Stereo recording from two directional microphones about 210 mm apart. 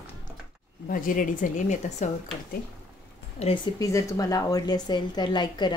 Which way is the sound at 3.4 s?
20° left (ahead or behind).